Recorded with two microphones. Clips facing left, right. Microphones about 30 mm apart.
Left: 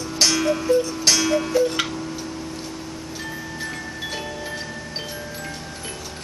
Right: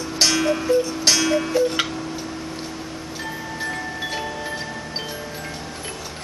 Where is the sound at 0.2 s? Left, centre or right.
Centre.